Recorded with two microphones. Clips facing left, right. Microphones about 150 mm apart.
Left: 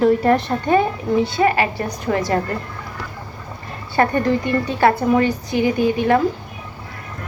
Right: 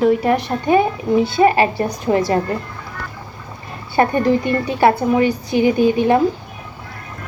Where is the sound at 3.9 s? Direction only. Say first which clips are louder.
Right 2 dB; 20° right (ahead or behind).